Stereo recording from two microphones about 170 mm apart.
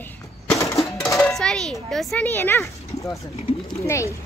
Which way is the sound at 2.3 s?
10° left (ahead or behind).